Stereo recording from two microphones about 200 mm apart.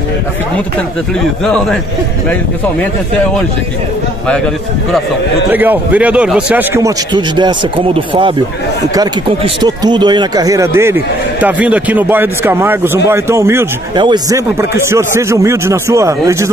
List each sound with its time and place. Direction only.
1.4 s a man's voice: 5° left (ahead or behind)
5.5 s a man's voice: 10° right (ahead or behind)